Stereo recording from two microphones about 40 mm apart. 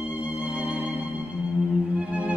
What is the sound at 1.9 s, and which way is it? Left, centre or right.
Music, right.